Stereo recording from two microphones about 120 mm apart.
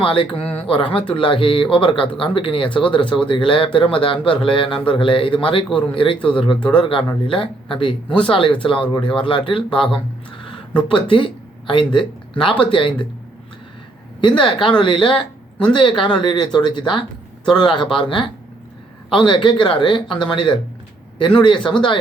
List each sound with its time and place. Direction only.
0.0 s speech: 45° left (ahead or behind)
14.2 s speech: 45° left (ahead or behind)
15.1 s a sound: 10° left (ahead or behind)
15.7 s a man's voice: 40° left (ahead or behind)